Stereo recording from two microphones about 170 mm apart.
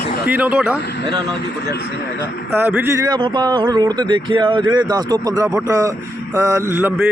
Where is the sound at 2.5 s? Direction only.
10° right (ahead or behind).